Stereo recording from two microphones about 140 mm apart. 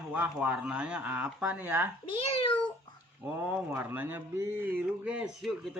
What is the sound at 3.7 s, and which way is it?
A man's voice, 15° right (ahead or behind).